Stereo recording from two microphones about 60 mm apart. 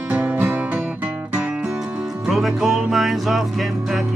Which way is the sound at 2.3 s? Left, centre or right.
Centre.